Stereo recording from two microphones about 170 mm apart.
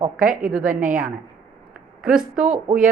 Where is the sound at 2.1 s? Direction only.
55° right (ahead or behind).